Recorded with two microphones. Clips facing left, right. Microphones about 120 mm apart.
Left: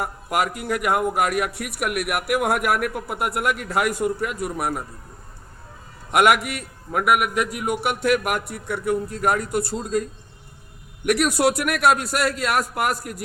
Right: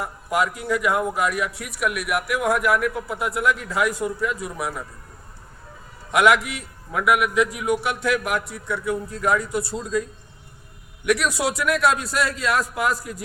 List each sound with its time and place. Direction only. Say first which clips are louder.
0.0 s a man's voice: even; 60° left (ahead or behind)
6.1 s a man's voice: even; 60° left (ahead or behind)
11.0 s a man's voice: left 3 dB; 55° left (ahead or behind)